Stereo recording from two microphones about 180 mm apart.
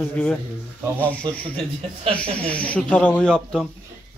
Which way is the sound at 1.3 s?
25° right (ahead or behind).